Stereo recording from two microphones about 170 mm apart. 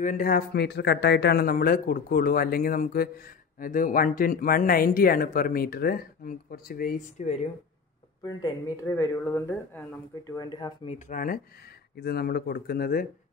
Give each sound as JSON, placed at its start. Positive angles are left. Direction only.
{"t": 0.0, "sound": "speech", "side_deg": 55}
{"t": 8.2, "sound": "speech", "side_deg": 20}
{"t": 10.9, "sound": "speech", "side_deg": 50}
{"t": 12.0, "sound": "speech", "side_deg": 70}